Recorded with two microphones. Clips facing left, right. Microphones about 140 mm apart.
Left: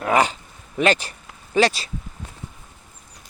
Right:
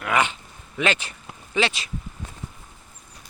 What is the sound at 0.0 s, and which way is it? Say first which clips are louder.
Speech: left 4 dB; 35° left (ahead or behind).